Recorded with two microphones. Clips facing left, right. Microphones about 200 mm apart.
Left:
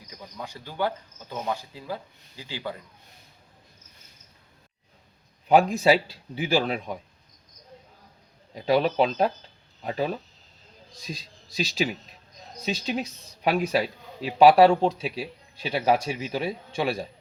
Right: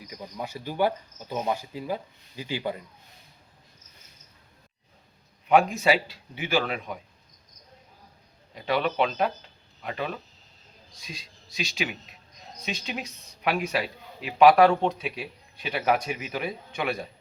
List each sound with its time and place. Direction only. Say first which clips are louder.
0.3 s speech: right 3 dB; 10° right (ahead or behind)
5.5 s a man's voice: left 2 dB; 35° left (ahead or behind)
8.6 s a man's voice: left 4 dB; 35° left (ahead or behind)